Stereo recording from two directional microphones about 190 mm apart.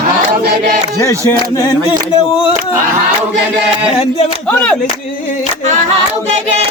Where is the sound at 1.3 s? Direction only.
20° left (ahead or behind).